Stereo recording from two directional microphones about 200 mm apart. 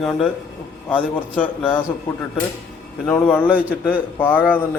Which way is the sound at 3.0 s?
10° left (ahead or behind).